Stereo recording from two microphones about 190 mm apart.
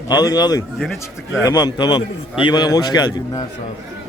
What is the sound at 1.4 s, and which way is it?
A man's voice, 20° left (ahead or behind).